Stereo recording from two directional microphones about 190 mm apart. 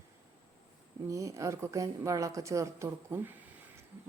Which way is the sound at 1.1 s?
15° right (ahead or behind).